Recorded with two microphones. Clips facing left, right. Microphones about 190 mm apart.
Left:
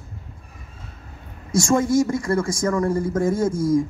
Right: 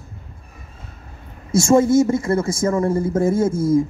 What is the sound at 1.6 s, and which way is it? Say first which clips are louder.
Speech: right 4 dB; 25° right (ahead or behind).